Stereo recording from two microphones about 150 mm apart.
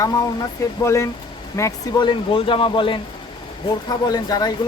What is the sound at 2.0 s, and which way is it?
Speech, 35° left (ahead or behind).